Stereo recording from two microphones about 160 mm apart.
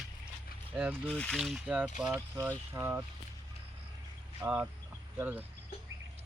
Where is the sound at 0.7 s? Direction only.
10° right (ahead or behind).